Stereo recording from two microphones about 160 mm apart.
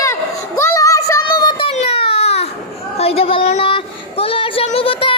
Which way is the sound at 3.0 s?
40° left (ahead or behind).